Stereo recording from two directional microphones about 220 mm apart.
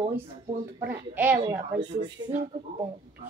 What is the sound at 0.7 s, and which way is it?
Speech, 10° right (ahead or behind).